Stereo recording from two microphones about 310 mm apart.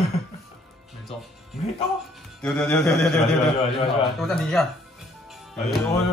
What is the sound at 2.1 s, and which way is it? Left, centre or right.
Speech, centre.